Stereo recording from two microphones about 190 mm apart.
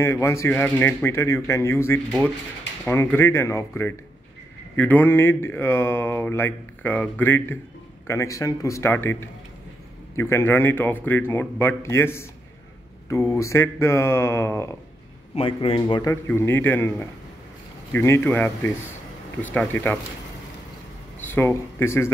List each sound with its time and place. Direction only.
0.0 s speech: 15° left (ahead or behind)
15.3 s a man's voice: 30° left (ahead or behind)
16.3 s speech: 10° left (ahead or behind)
21.2 s speech: 10° left (ahead or behind)